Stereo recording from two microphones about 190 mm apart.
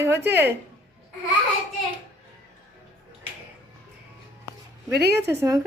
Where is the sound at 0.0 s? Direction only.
15° right (ahead or behind).